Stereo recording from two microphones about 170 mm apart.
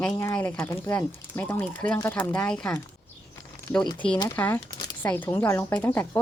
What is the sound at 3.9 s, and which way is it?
Speech, 10° left (ahead or behind).